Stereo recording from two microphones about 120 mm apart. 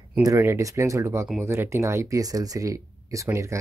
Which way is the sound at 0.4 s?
25° right (ahead or behind).